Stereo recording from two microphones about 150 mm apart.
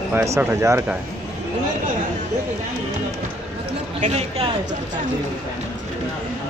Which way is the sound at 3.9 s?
45° right (ahead or behind).